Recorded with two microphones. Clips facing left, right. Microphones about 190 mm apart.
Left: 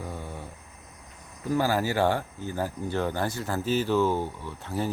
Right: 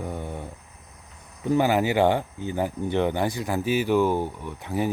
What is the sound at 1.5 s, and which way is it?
Speech, 20° right (ahead or behind).